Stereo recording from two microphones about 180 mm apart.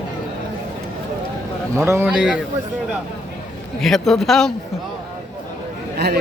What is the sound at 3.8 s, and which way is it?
Speech, centre (ahead or behind).